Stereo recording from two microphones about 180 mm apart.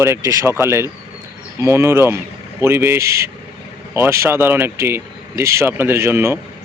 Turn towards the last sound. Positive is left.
turn(degrees=-15)  # may be behind; listen again after turning